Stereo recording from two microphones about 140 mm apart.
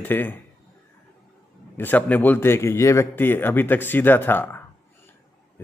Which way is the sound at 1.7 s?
10° left (ahead or behind).